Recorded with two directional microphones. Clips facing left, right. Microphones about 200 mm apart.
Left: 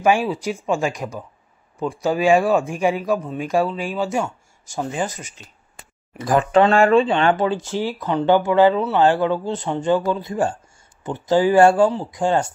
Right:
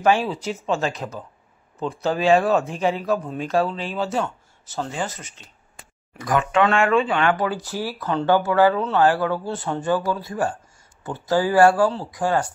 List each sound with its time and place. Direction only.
0.0 s speech: 10° left (ahead or behind)
6.1 s speech: 30° left (ahead or behind)